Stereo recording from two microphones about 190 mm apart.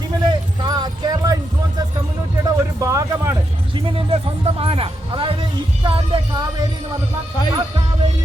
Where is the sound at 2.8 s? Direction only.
15° right (ahead or behind).